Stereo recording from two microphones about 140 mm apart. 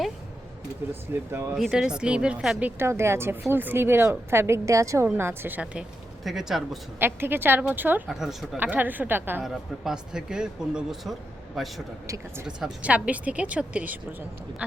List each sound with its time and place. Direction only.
1.3 s a woman's voice: 20° right (ahead or behind)
1.5 s a woman's voice: centre (ahead or behind)
7.0 s a woman's voice: 15° right (ahead or behind)
8.0 s speech: centre (ahead or behind)
8.5 s a woman's voice: 15° right (ahead or behind)
9.4 s speech: centre (ahead or behind)
12.0 s speech: 20° right (ahead or behind)
12.5 s a woman's voice: 5° right (ahead or behind)